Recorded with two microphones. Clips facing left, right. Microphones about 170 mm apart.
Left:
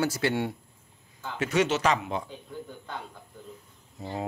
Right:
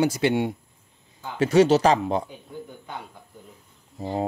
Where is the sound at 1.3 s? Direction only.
35° right (ahead or behind).